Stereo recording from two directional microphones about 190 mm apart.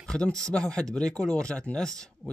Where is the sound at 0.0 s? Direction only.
5° left (ahead or behind).